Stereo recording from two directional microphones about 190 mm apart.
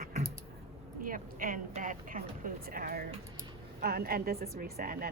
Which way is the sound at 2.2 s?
50° right (ahead or behind).